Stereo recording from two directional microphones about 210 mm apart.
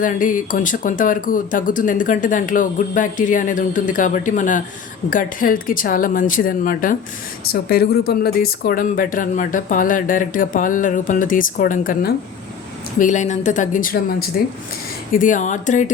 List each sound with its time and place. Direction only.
0.0 s speech: 40° left (ahead or behind)